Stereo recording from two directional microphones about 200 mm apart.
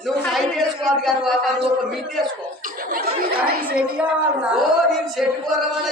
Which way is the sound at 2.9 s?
50° right (ahead or behind).